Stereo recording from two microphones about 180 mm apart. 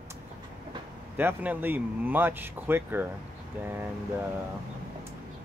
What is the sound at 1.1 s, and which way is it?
Speech, 10° right (ahead or behind).